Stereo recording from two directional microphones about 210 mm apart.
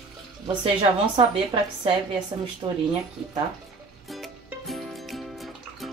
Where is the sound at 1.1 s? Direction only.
20° right (ahead or behind).